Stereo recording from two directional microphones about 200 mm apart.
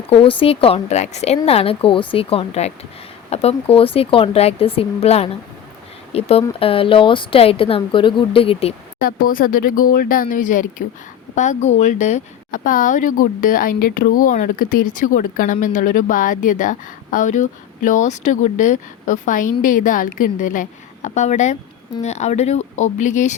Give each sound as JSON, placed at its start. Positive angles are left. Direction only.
{"t": 0.1, "sound": "a woman's voice", "side_deg": 25}
{"t": 9.0, "sound": "speech", "side_deg": 45}